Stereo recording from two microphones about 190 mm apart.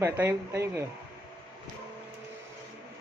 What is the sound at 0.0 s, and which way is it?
Speech, 10° right (ahead or behind).